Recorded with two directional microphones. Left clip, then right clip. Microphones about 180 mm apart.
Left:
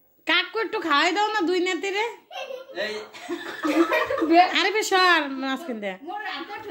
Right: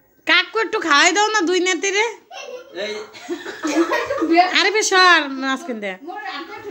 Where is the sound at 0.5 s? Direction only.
10° right (ahead or behind).